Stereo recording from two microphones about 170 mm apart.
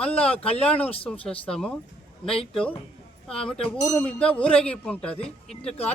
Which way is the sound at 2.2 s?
35° left (ahead or behind).